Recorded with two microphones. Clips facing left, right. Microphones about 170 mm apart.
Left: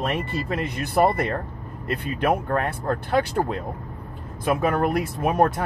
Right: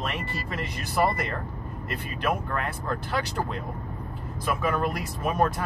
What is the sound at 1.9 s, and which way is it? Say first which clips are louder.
Speech: left 6 dB; 55° left (ahead or behind).